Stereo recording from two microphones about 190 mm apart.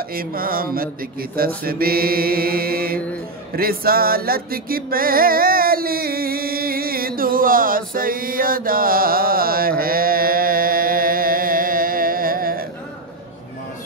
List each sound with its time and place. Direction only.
0.1 s mantra: 50° right (ahead or behind)
3.5 s music: 50° right (ahead or behind)